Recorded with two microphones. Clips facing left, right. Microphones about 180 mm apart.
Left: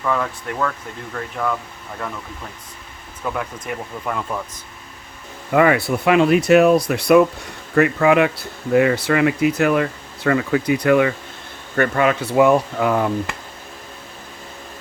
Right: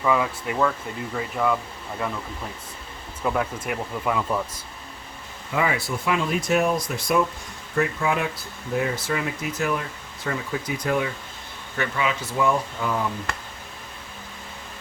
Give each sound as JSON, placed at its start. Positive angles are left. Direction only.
{"t": 0.0, "sound": "speech", "side_deg": -5}
{"t": 3.2, "sound": "speech", "side_deg": -5}
{"t": 5.5, "sound": "speech", "side_deg": 60}
{"t": 11.8, "sound": "speech", "side_deg": 55}